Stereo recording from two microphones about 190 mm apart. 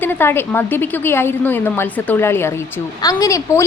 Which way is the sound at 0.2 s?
10° left (ahead or behind).